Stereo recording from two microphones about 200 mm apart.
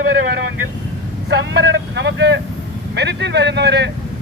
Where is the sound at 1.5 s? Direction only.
60° right (ahead or behind).